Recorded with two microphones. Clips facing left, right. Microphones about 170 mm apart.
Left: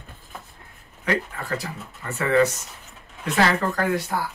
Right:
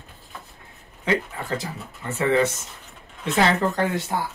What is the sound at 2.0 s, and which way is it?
Speech, 25° right (ahead or behind).